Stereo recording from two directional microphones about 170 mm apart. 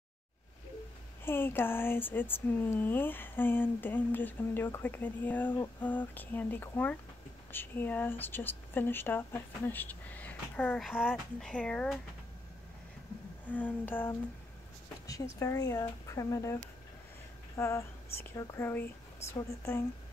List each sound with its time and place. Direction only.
1.2 s speech: 15° left (ahead or behind)
10.9 s speech: centre (ahead or behind)
13.5 s speech: 10° left (ahead or behind)